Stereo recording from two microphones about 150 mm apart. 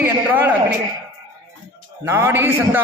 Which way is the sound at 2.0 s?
15° right (ahead or behind).